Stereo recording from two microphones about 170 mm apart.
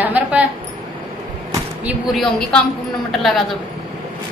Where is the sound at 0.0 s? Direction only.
10° right (ahead or behind).